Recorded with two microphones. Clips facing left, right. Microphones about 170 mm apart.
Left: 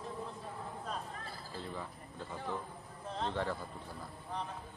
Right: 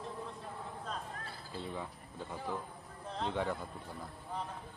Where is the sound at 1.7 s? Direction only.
5° right (ahead or behind).